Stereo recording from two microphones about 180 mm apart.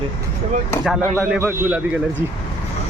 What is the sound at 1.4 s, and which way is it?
Speech, 10° right (ahead or behind).